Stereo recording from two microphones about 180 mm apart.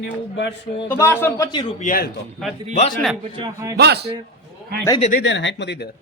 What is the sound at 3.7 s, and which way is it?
Speech, 65° right (ahead or behind).